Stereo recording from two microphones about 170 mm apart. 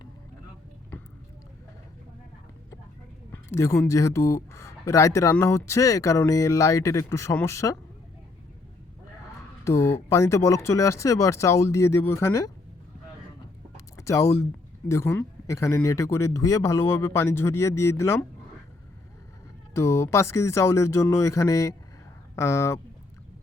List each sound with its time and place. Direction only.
3.3 s speech: 15° left (ahead or behind)
9.6 s speech: 15° left (ahead or behind)
13.7 s a sound: 15° left (ahead or behind)
14.8 s speech: 15° left (ahead or behind)
19.7 s speech: 15° left (ahead or behind)